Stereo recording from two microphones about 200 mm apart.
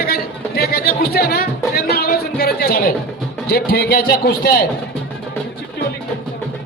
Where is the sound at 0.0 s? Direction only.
50° left (ahead or behind).